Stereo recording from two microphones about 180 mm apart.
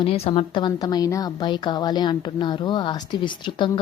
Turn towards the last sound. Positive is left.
turn(degrees=25)  # may be behind; listen again after turning